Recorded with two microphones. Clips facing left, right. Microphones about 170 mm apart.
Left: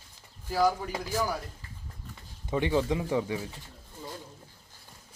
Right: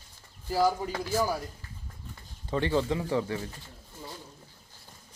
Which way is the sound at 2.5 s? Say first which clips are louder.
Even; 10° left (ahead or behind).